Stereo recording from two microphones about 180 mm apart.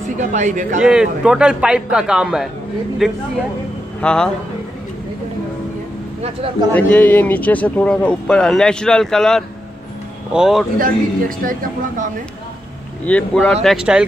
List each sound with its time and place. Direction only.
0.2 s speech: 40° right (ahead or behind)
0.8 s a man's voice: 5° right (ahead or behind)
6.7 s a man's voice: 10° left (ahead or behind)
10.8 s speech: 50° right (ahead or behind)
13.0 s speech: 10° left (ahead or behind)
13.7 s a man's voice: 5° right (ahead or behind)